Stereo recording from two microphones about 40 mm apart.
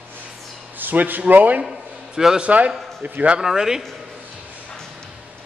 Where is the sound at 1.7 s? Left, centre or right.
Centre.